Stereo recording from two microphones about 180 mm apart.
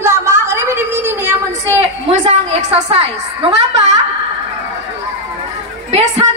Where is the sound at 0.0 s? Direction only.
15° right (ahead or behind).